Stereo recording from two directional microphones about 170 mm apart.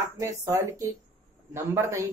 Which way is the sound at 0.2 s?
15° right (ahead or behind).